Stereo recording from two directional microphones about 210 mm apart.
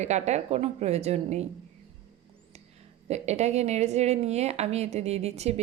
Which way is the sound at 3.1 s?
30° right (ahead or behind).